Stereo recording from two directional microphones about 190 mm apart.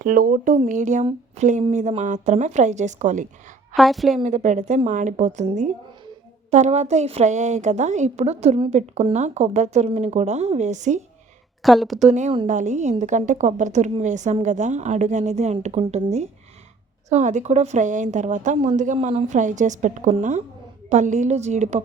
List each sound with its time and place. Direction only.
0.0 s a woman's voice: 45° right (ahead or behind)
3.8 s a woman's voice: centre (ahead or behind)
4.2 s a woman's voice: 35° right (ahead or behind)
6.5 s a woman's voice: 35° right (ahead or behind)
11.6 s a woman's voice: centre (ahead or behind)
11.9 s a woman's voice: 40° right (ahead or behind)